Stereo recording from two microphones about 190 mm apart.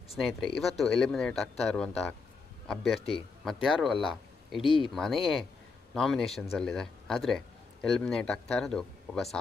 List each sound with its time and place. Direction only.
0.2 s speech: centre (ahead or behind)
4.6 s speech: 25° left (ahead or behind)
4.9 s a man's voice: centre (ahead or behind)